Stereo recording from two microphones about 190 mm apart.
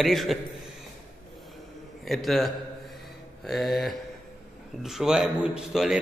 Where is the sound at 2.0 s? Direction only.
Centre (ahead or behind).